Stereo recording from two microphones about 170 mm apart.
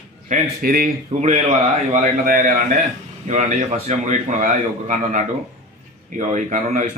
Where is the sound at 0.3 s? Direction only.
60° right (ahead or behind).